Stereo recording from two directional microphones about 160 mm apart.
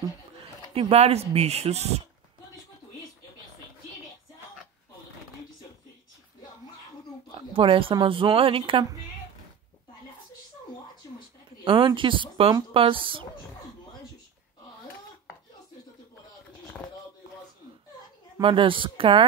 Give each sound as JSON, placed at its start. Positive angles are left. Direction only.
{"t": 0.7, "sound": "a woman's voice", "side_deg": -40}
{"t": 7.5, "sound": "a woman's voice", "side_deg": -35}
{"t": 11.6, "sound": "a woman's voice", "side_deg": -30}
{"t": 18.4, "sound": "a woman's voice", "side_deg": -30}